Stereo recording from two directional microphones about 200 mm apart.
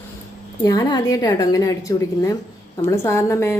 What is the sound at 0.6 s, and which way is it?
A woman's voice, 20° left (ahead or behind).